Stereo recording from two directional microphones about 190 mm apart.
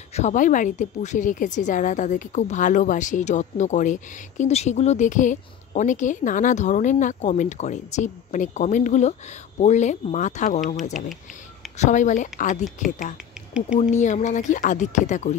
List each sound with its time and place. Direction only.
0.1 s a woman's voice: 40° left (ahead or behind)
13.5 s speech: 5° right (ahead or behind)
13.7 s a woman's voice: 35° left (ahead or behind)